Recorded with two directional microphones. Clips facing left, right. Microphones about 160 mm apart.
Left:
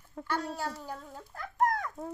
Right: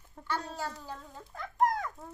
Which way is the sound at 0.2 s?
90° left.